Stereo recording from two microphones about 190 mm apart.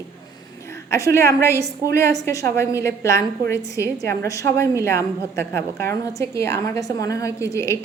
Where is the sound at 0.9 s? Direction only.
15° left (ahead or behind).